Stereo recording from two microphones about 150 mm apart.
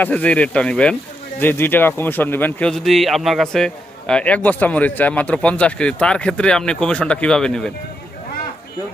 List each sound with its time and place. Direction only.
0.0 s a man's voice: 10° left (ahead or behind)